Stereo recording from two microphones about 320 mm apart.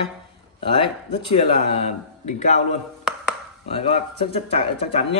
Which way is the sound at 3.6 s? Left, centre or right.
Centre.